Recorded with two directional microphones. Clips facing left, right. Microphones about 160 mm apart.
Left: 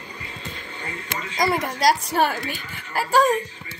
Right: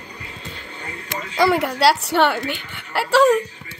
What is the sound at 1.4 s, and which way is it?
Speech, 70° right (ahead or behind).